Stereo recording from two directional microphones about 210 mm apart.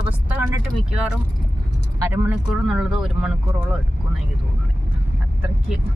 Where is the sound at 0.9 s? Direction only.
5° right (ahead or behind).